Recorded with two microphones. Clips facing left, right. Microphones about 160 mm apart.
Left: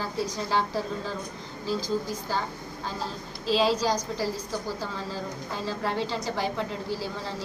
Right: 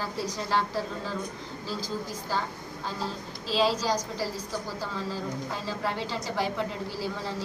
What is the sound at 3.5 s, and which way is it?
Speech, 5° right (ahead or behind).